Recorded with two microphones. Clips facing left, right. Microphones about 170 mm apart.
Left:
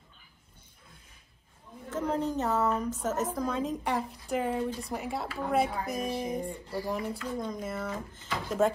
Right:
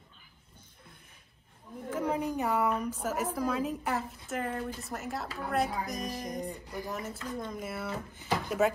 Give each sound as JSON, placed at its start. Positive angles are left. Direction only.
{"t": 1.9, "sound": "a woman's voice", "side_deg": -10}
{"t": 6.6, "sound": "a woman's voice", "side_deg": -15}
{"t": 6.9, "sound": "a woman's voice", "side_deg": 0}